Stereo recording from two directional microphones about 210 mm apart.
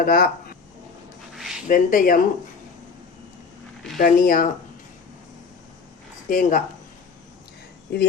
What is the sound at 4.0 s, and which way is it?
Speech, 40° left (ahead or behind).